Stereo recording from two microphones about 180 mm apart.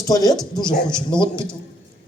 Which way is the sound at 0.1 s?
20° left (ahead or behind).